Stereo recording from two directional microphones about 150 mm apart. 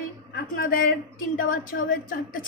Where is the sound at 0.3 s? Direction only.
70° left (ahead or behind).